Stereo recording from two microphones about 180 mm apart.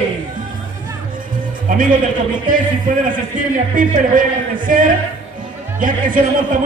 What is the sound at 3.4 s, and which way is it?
A man's voice, 50° right (ahead or behind).